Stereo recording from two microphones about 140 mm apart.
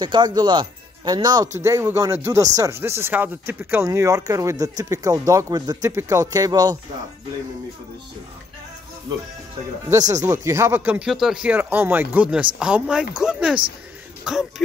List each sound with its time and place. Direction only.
0.0 s speech: 30° right (ahead or behind)
10.1 s speech: 20° right (ahead or behind); by 14.4 s 5° right (ahead or behind)